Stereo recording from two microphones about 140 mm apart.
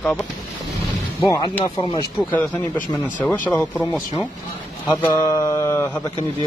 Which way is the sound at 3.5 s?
10° left (ahead or behind).